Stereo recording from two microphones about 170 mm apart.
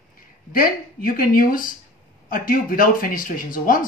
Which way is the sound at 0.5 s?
55° left (ahead or behind).